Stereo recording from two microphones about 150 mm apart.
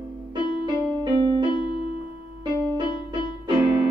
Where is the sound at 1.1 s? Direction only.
30° right (ahead or behind).